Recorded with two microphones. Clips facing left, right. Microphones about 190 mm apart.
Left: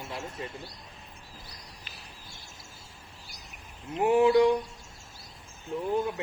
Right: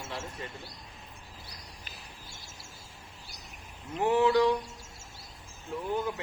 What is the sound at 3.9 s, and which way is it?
Speech, 25° left (ahead or behind).